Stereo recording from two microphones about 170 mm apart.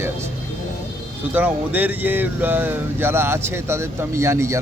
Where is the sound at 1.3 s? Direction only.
10° right (ahead or behind).